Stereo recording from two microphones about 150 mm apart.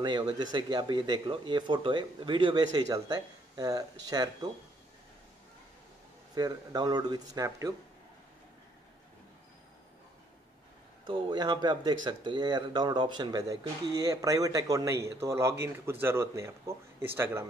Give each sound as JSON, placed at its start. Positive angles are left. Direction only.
{"t": 0.0, "sound": "speech", "side_deg": -30}
{"t": 6.3, "sound": "speech", "side_deg": -25}
{"t": 11.1, "sound": "speech", "side_deg": -30}